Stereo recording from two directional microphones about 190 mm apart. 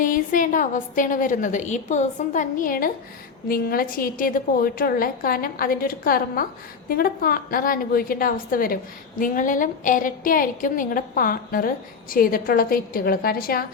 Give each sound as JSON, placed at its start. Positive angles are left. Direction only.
{"t": 0.0, "sound": "a woman's voice", "side_deg": 45}